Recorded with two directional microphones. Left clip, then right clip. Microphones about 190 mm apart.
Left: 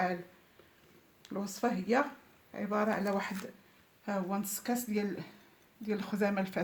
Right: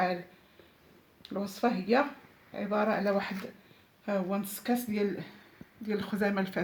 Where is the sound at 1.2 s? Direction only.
40° left (ahead or behind).